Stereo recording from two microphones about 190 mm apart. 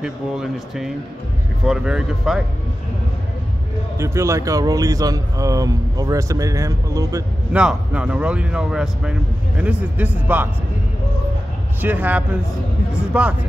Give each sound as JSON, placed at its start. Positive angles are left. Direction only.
{"t": 0.0, "sound": "speech", "side_deg": 0}
{"t": 4.0, "sound": "speech", "side_deg": -15}
{"t": 7.5, "sound": "speech", "side_deg": -5}
{"t": 11.8, "sound": "speech", "side_deg": -10}